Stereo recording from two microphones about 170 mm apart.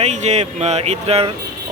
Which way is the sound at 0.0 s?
40° right (ahead or behind).